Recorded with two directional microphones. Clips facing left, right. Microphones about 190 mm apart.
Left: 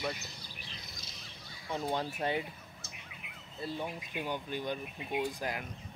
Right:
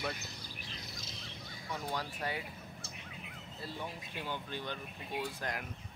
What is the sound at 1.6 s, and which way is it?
Speech, 25° left (ahead or behind).